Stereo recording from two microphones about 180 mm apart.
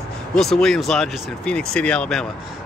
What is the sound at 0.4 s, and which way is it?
Speech, centre (ahead or behind).